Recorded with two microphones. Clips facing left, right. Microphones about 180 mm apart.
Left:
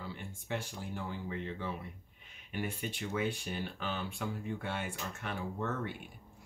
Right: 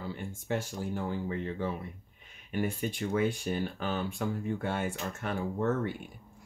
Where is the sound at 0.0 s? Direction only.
45° right (ahead or behind).